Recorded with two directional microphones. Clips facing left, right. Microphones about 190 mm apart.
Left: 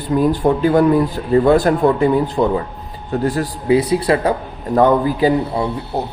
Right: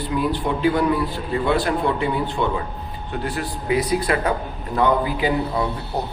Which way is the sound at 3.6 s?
30° left (ahead or behind).